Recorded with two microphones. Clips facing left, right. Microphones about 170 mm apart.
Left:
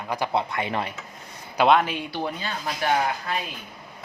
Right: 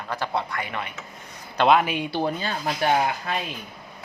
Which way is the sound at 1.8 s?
15° right (ahead or behind).